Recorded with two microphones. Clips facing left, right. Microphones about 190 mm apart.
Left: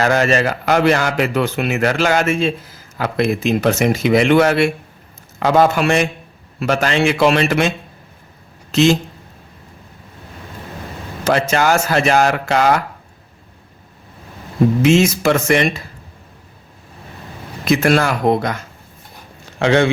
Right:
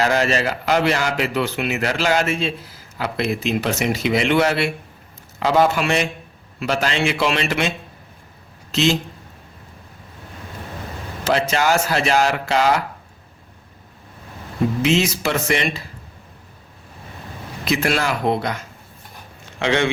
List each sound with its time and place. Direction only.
0.0 s a man's voice: 50° left (ahead or behind)
8.7 s a man's voice: 50° left (ahead or behind)
11.3 s a man's voice: 50° left (ahead or behind)
14.8 s a man's voice: 45° left (ahead or behind)
17.7 s a man's voice: 45° left (ahead or behind)